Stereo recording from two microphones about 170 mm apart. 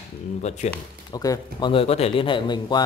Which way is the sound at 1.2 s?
25° left (ahead or behind).